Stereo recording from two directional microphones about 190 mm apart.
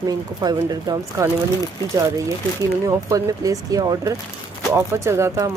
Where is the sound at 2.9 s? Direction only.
15° right (ahead or behind).